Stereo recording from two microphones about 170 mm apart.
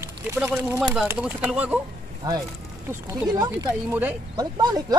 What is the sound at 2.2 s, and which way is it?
Speech, 25° right (ahead or behind).